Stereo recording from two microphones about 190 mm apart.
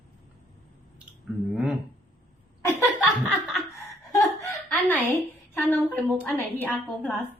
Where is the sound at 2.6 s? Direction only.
10° left (ahead or behind).